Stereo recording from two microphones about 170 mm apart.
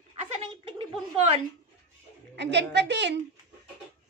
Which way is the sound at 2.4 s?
90° right.